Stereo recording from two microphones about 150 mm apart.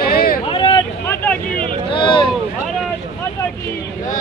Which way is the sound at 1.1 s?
15° left (ahead or behind).